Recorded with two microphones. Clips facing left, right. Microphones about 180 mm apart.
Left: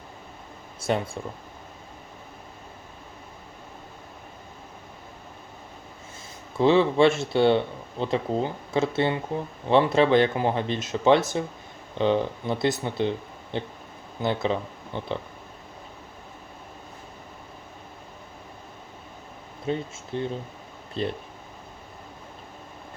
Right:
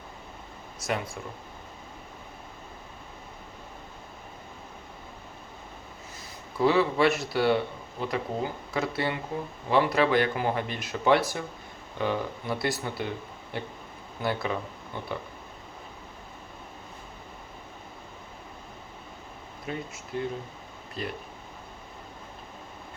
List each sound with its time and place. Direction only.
0.9 s speech: 30° left (ahead or behind)
6.6 s speech: 25° left (ahead or behind)
19.7 s speech: 30° left (ahead or behind)